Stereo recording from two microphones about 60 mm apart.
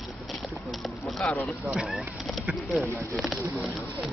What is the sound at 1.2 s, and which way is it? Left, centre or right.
Speech, centre.